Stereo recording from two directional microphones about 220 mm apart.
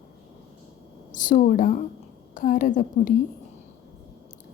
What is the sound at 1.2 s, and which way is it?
A woman's voice, 35° left (ahead or behind).